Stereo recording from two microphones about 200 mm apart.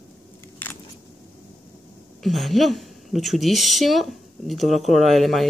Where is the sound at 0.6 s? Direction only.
10° left (ahead or behind).